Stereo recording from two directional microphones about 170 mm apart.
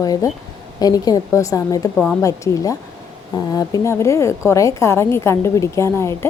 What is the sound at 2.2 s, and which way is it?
A woman's voice, 20° left (ahead or behind).